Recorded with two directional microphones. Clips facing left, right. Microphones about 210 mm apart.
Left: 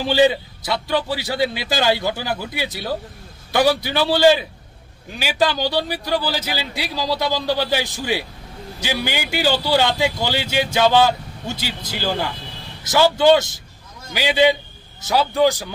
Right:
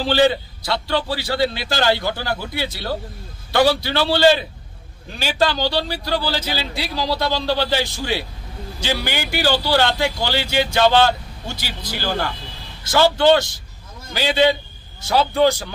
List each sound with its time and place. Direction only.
0.0 s a man's voice: 15° left (ahead or behind)
15.0 s a man's voice: centre (ahead or behind)